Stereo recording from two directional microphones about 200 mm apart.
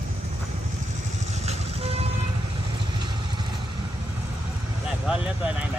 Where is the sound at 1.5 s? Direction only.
30° right (ahead or behind).